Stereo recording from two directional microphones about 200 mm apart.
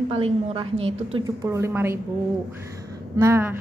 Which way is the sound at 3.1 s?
15° right (ahead or behind).